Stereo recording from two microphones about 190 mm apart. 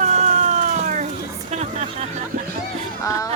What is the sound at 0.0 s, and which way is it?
Cat, 40° right (ahead or behind).